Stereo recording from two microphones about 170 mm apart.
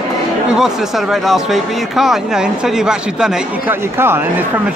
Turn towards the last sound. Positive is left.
turn(degrees=-15)  # may be behind; listen again after turning